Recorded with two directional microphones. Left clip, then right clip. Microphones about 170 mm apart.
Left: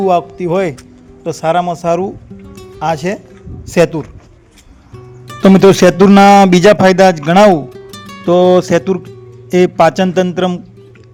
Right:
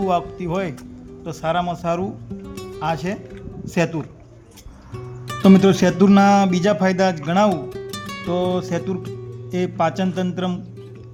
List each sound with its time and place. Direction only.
0.0 s speech: 35° left (ahead or behind)
2.4 s music: centre (ahead or behind)
2.7 s speech: 40° left (ahead or behind)
5.4 s speech: 50° left (ahead or behind)
7.5 s music: centre (ahead or behind)
8.3 s speech: 50° left (ahead or behind)